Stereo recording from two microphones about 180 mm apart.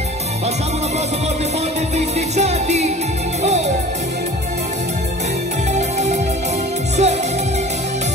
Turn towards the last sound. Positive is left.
turn(degrees=-40)  # may be behind; listen again after turning